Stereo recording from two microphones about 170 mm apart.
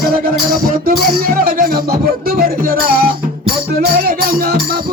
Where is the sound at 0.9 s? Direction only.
60° right (ahead or behind).